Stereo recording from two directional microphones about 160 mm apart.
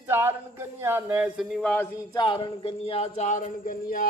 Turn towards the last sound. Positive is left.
turn(degrees=60)  # may be behind; listen again after turning